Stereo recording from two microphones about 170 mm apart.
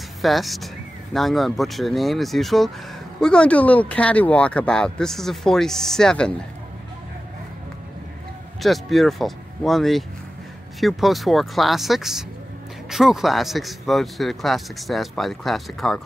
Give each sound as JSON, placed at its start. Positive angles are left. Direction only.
{"t": 0.2, "sound": "speech", "side_deg": 0}
{"t": 8.5, "sound": "speech", "side_deg": 0}